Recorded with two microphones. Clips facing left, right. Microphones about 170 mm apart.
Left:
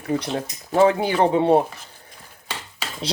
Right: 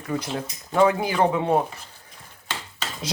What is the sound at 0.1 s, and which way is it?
Speech, 30° left (ahead or behind).